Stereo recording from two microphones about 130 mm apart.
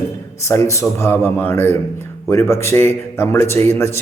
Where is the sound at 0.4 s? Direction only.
20° left (ahead or behind).